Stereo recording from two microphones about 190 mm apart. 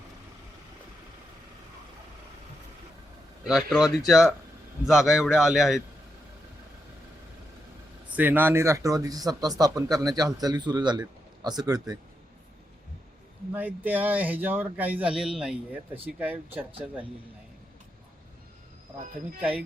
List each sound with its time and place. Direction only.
3.4 s a man's voice: centre (ahead or behind)
8.1 s speech: 10° right (ahead or behind)
13.5 s speech: 10° right (ahead or behind)